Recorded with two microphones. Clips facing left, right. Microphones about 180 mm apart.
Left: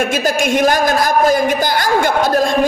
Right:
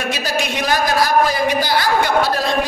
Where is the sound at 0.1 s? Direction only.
50° left (ahead or behind).